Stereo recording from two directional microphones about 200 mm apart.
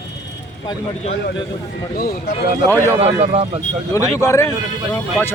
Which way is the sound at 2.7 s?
10° left (ahead or behind).